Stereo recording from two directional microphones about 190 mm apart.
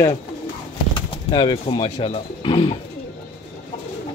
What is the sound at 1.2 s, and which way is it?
A man's voice, 25° left (ahead or behind).